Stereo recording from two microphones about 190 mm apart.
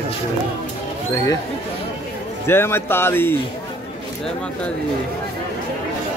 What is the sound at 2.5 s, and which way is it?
Speech, 10° left (ahead or behind).